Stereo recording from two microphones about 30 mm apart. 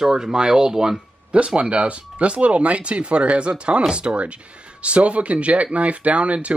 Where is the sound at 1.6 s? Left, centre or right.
Right.